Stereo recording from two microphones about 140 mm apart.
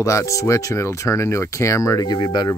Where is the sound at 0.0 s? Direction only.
20° left (ahead or behind).